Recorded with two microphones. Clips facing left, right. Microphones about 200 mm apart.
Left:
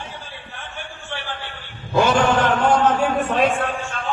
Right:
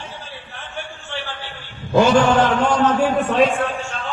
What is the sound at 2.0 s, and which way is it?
Chant, 55° left (ahead or behind).